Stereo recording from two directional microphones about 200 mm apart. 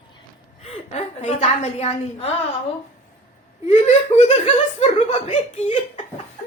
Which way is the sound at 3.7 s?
30° left (ahead or behind).